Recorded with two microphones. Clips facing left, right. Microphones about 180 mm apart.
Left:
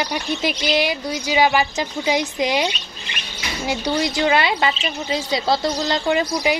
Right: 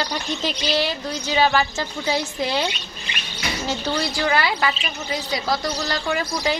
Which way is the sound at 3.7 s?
15° left (ahead or behind).